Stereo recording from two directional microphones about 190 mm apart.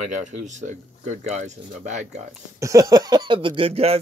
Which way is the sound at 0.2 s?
40° right (ahead or behind).